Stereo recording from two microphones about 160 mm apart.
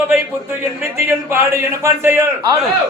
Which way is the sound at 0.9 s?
15° right (ahead or behind).